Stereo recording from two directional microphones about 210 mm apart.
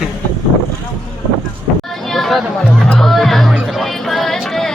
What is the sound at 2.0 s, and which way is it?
Music, centre (ahead or behind).